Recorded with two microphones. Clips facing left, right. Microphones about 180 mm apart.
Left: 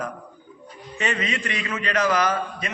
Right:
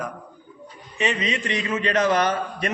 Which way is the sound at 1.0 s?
20° right (ahead or behind).